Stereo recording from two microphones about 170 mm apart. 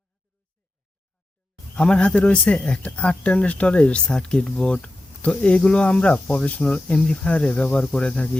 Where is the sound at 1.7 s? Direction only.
5° left (ahead or behind).